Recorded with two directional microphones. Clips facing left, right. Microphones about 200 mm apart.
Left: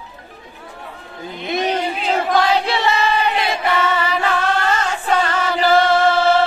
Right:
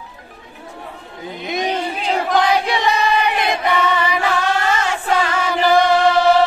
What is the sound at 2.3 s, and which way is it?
Choir, 15° right (ahead or behind).